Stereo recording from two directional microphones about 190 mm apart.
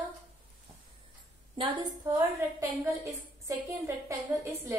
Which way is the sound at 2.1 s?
15° right (ahead or behind).